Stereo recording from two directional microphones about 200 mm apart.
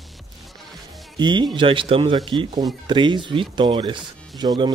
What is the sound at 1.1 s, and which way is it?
Speech, 20° right (ahead or behind).